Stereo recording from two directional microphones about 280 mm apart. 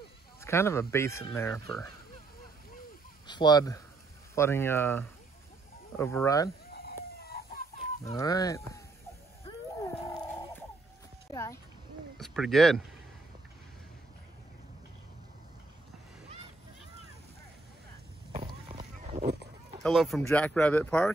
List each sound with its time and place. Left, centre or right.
0.4 s speech: centre
3.3 s speech: centre
6.7 s chicken: left
8.0 s speech: centre
9.5 s a sound: centre
11.3 s a sound: centre
12.2 s speech: centre
18.3 s a sound: right
19.8 s speech: centre